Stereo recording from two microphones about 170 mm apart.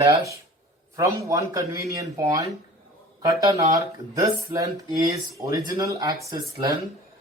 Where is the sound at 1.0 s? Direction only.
15° right (ahead or behind).